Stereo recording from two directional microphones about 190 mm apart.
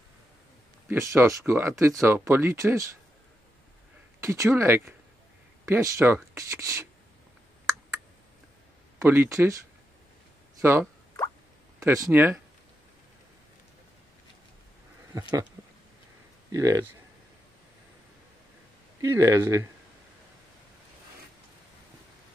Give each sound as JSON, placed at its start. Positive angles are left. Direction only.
{"t": 0.8, "sound": "speech", "side_deg": -15}
{"t": 4.2, "sound": "speech", "side_deg": -15}
{"t": 9.0, "sound": "speech", "side_deg": -15}
{"t": 10.6, "sound": "speech", "side_deg": -15}
{"t": 16.5, "sound": "speech", "side_deg": -15}
{"t": 18.9, "sound": "speech", "side_deg": -15}